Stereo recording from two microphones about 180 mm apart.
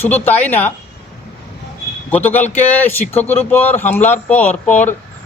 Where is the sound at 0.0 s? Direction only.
10° left (ahead or behind).